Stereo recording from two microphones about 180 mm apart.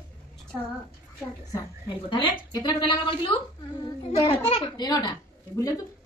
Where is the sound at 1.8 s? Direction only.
25° left (ahead or behind).